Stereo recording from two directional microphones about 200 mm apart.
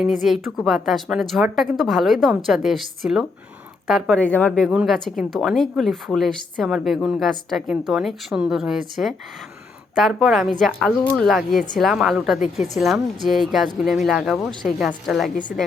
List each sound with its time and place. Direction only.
0.0 s a woman's voice: centre (ahead or behind)